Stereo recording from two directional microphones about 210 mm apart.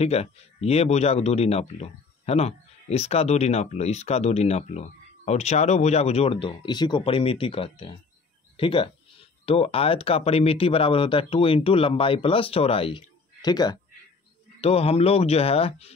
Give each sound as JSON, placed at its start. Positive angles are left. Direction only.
{"t": 0.0, "sound": "speech", "side_deg": 30}